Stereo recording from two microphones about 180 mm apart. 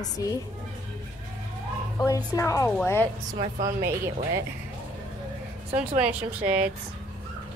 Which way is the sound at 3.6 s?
15° right (ahead or behind).